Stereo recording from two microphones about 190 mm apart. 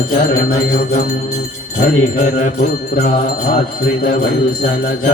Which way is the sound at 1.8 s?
40° left (ahead or behind).